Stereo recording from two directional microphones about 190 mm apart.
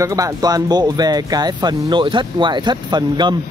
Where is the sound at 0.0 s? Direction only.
15° right (ahead or behind).